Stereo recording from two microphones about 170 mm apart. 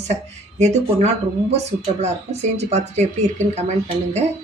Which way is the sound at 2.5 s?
40° right (ahead or behind).